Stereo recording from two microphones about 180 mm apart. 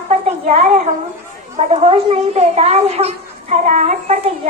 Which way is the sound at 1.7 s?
35° right (ahead or behind).